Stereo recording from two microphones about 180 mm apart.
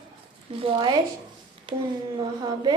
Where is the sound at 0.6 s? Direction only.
25° right (ahead or behind).